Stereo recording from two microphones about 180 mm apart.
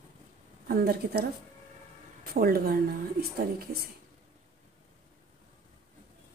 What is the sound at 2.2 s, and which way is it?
A woman's voice, 55° right (ahead or behind).